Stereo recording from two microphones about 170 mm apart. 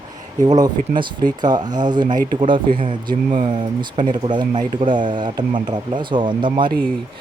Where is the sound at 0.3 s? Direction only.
25° right (ahead or behind).